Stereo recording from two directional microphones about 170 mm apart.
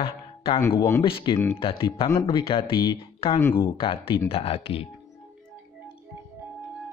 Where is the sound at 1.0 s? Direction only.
30° left (ahead or behind).